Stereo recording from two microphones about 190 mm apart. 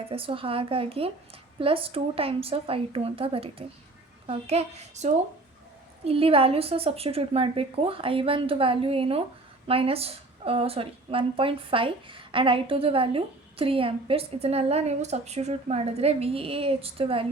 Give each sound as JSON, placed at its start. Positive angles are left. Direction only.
{"t": 0.0, "sound": "a woman's voice", "side_deg": -30}